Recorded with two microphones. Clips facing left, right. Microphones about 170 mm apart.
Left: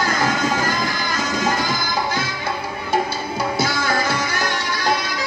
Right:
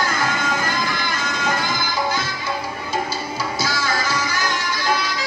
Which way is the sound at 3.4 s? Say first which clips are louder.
Left 4 dB; 60° left (ahead or behind).